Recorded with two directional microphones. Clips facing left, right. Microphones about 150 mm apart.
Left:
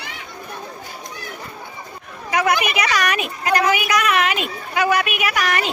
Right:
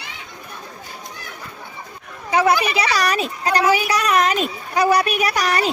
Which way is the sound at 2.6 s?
30° right (ahead or behind).